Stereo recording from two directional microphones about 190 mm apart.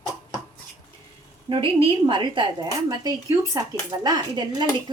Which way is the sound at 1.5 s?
25° right (ahead or behind).